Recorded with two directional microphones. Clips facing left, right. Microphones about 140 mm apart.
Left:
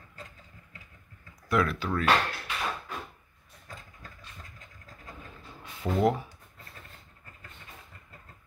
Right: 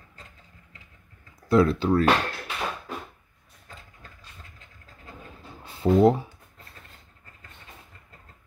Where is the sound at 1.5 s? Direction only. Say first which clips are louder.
Right 8 dB; 30° right (ahead or behind).